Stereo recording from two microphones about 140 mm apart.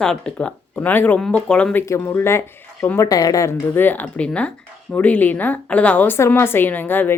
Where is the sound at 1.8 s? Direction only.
20° left (ahead or behind).